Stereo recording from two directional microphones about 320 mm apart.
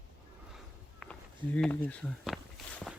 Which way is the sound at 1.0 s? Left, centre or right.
Centre.